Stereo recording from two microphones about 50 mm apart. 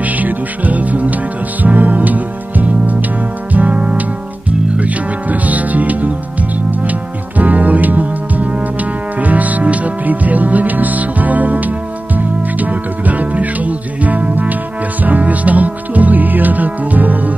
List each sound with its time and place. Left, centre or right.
0.0 s music: right